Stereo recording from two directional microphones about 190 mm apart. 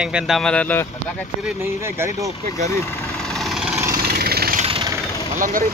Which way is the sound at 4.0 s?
55° right (ahead or behind).